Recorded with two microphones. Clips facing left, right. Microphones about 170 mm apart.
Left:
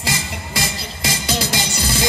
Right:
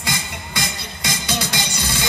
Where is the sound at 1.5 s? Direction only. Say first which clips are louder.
Left 3 dB; 10° left (ahead or behind).